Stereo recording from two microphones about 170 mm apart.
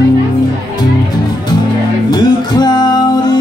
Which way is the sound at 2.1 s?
25° left (ahead or behind).